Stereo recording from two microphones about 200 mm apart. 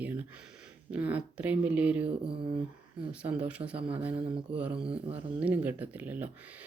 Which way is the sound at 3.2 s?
5° right (ahead or behind).